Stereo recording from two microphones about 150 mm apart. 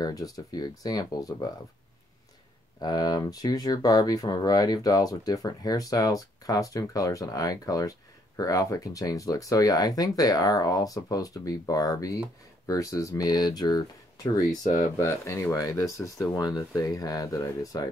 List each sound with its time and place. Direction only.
0.0 s speech: 25° left (ahead or behind)
2.8 s speech: 25° left (ahead or behind)